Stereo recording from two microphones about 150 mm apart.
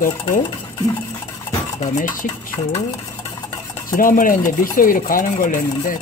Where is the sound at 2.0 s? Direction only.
65° left (ahead or behind).